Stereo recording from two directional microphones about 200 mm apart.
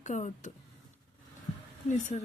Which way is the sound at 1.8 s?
40° left (ahead or behind).